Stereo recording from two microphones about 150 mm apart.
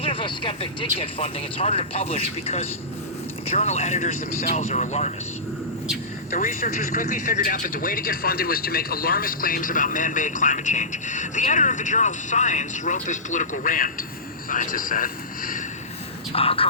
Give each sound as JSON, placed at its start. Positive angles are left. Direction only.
{"t": 0.0, "sound": "speech", "side_deg": 35}
{"t": 6.3, "sound": "speech", "side_deg": 60}
{"t": 16.3, "sound": "speech", "side_deg": 40}